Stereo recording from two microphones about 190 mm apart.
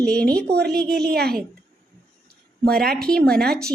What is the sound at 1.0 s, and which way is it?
Speech, 55° right (ahead or behind).